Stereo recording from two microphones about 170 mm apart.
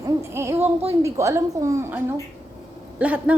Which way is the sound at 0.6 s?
35° right (ahead or behind).